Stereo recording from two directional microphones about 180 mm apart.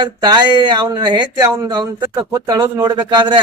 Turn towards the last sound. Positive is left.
turn(degrees=-25)  # may be behind; listen again after turning